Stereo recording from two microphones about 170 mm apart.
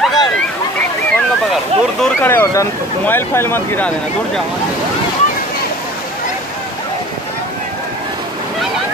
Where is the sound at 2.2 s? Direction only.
15° left (ahead or behind).